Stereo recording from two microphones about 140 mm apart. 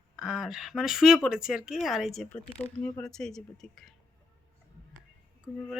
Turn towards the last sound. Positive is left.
turn(degrees=-5)  # may be behind; listen again after turning